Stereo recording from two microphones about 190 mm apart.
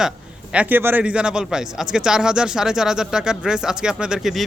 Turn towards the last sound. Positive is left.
turn(degrees=0)  # may be behind; listen again after turning